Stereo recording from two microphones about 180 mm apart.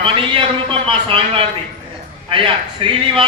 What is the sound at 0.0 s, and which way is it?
A man's voice, 30° right (ahead or behind).